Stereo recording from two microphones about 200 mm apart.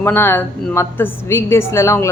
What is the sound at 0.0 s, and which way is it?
A woman's voice, 10° left (ahead or behind).